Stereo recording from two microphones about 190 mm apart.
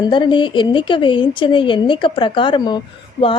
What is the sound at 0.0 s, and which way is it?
Speech, 25° left (ahead or behind).